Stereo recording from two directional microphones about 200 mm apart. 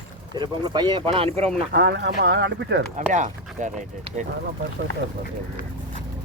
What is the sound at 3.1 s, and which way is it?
Speech, 40° right (ahead or behind).